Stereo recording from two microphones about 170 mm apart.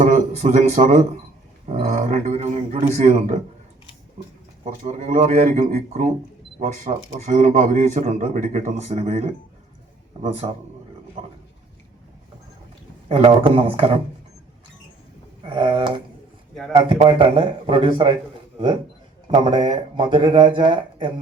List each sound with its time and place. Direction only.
0.0 s speech: 45° right (ahead or behind)
4.6 s a man's voice: 45° right (ahead or behind)
13.1 s a man's voice: 35° right (ahead or behind)
15.4 s speech: 30° right (ahead or behind)
19.3 s speech: 30° right (ahead or behind)